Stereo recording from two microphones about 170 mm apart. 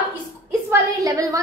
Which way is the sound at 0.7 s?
20° right (ahead or behind).